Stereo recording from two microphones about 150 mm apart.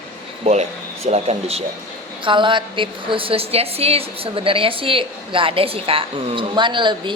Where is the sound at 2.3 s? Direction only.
35° right (ahead or behind).